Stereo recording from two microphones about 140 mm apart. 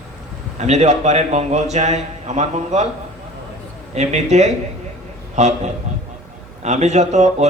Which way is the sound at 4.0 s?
55° right (ahead or behind).